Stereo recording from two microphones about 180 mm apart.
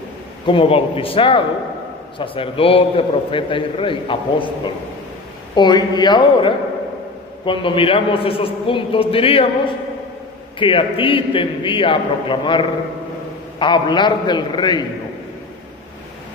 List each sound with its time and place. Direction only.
0.5 s a man's voice: 30° left (ahead or behind)
10.6 s a man's voice: 30° left (ahead or behind)